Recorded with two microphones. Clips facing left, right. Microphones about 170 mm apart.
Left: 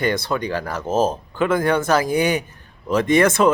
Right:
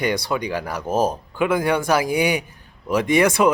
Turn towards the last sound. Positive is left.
turn(degrees=-10)  # may be behind; listen again after turning